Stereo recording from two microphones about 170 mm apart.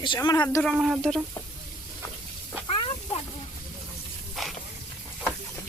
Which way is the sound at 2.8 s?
35° left (ahead or behind).